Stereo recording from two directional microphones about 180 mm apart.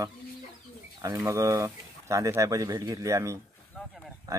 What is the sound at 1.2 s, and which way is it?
Speech, 15° right (ahead or behind).